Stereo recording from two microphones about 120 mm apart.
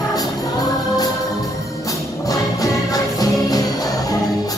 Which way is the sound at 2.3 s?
30° left (ahead or behind).